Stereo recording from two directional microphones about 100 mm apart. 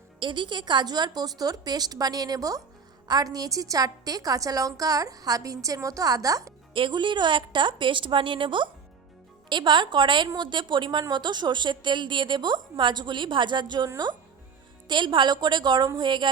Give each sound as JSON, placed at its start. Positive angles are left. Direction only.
{"t": 0.2, "sound": "a woman's voice", "side_deg": -50}
{"t": 6.7, "sound": "a woman's voice", "side_deg": -55}